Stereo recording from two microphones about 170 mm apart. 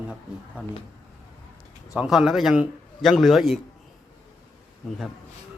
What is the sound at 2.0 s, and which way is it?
Speech, centre (ahead or behind).